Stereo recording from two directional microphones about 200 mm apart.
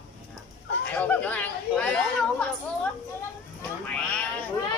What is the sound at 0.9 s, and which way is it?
Speech, 10° left (ahead or behind).